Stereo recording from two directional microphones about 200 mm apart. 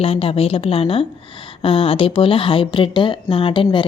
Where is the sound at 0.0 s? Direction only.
30° left (ahead or behind).